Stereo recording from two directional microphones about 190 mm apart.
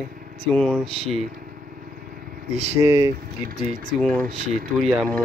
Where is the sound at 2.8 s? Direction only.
15° right (ahead or behind).